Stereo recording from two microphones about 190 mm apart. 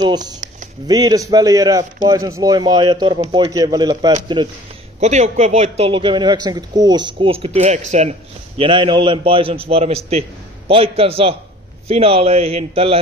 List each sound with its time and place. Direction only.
0.8 s speech: 20° right (ahead or behind)
5.0 s a man's voice: 40° right (ahead or behind)